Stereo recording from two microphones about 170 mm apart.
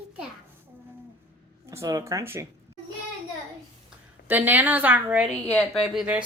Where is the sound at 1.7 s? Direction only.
20° right (ahead or behind).